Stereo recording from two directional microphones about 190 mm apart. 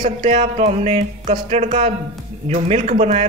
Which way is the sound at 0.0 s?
40° right (ahead or behind).